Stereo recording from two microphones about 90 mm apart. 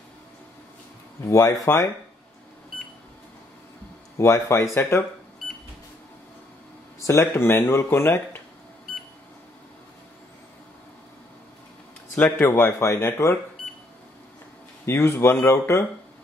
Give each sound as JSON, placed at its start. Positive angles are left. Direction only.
{"t": 1.2, "sound": "speech", "side_deg": 30}
{"t": 4.2, "sound": "speech", "side_deg": 30}
{"t": 7.0, "sound": "speech", "side_deg": 35}
{"t": 12.2, "sound": "speech", "side_deg": 25}
{"t": 14.9, "sound": "speech", "side_deg": 30}